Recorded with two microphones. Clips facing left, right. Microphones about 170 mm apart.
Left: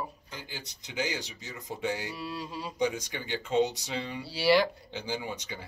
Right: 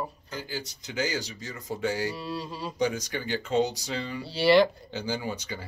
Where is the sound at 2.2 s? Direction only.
10° left (ahead or behind).